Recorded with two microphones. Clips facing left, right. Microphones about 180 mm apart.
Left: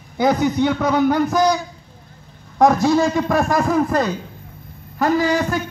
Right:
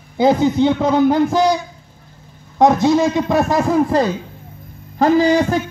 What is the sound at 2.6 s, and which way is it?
A man's voice, 20° right (ahead or behind).